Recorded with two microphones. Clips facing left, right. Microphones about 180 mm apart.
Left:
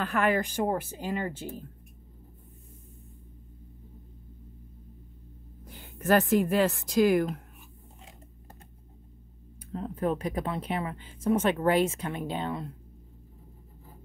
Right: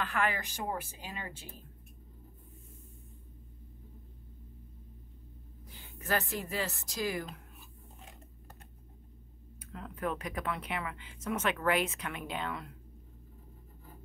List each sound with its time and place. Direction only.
0.0 s a woman's voice: 45° left (ahead or behind)
5.7 s speech: 50° left (ahead or behind)
9.7 s speech: 35° left (ahead or behind)